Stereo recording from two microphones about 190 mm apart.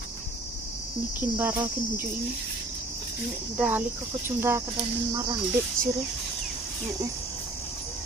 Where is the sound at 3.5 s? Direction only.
10° right (ahead or behind).